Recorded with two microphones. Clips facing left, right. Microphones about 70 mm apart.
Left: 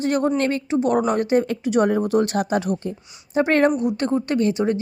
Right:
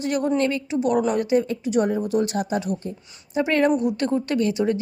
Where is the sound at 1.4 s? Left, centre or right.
Left.